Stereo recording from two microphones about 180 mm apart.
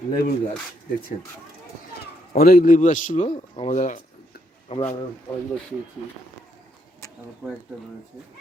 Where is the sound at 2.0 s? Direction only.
55° left (ahead or behind); by 4.9 s 35° left (ahead or behind).